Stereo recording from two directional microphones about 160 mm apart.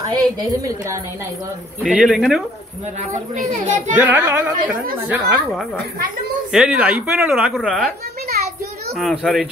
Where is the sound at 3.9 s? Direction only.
10° right (ahead or behind).